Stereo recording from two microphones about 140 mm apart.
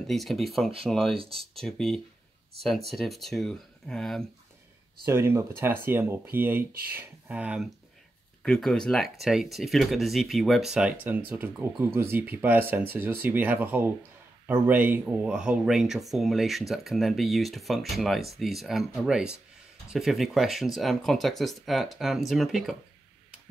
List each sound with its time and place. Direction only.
0.0 s speech: centre (ahead or behind)
1.1 s speech: 40° right (ahead or behind)
1.5 s speech: centre (ahead or behind)
5.0 s speech: 20° right (ahead or behind)
8.4 s speech: 5° left (ahead or behind)